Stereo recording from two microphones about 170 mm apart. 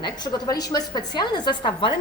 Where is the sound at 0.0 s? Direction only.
20° left (ahead or behind).